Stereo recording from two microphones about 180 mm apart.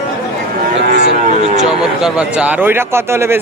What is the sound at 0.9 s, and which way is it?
Cattle, 65° right (ahead or behind).